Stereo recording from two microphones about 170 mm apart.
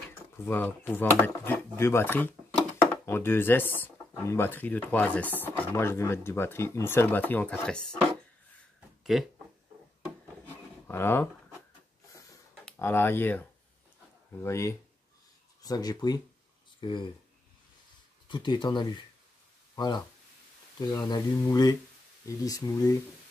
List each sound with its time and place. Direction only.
0.1 s speech: 10° left (ahead or behind)
9.1 s speech: centre (ahead or behind)
10.9 s speech: 15° left (ahead or behind)
12.7 s speech: 15° left (ahead or behind)
18.3 s speech: 25° left (ahead or behind)